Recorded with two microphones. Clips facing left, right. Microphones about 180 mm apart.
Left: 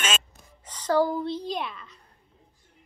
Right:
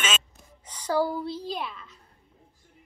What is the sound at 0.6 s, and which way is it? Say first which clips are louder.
Speech: left 3 dB; 10° right (ahead or behind).